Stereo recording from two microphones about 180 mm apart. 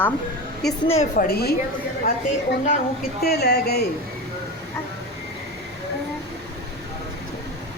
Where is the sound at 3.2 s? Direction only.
60° left (ahead or behind).